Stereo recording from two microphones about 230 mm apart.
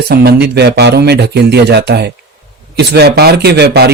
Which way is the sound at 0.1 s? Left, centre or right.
Right.